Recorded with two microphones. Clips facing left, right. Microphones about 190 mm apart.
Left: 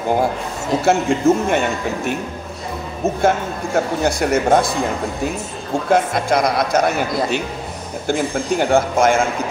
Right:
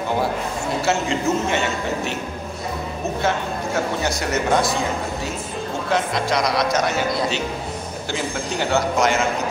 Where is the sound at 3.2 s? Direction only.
55° left (ahead or behind).